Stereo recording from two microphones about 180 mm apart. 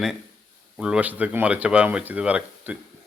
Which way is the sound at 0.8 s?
5° right (ahead or behind).